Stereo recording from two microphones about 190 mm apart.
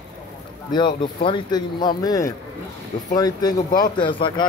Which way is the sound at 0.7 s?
25° left (ahead or behind).